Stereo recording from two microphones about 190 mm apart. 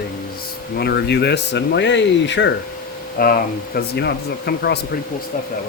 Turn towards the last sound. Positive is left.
turn(degrees=60)  # may be behind; listen again after turning